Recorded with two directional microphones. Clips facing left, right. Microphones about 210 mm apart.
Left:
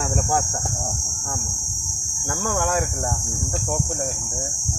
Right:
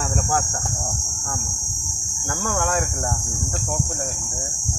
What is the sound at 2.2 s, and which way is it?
Speech, centre (ahead or behind).